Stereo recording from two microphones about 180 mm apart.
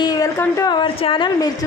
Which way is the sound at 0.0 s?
20° left (ahead or behind).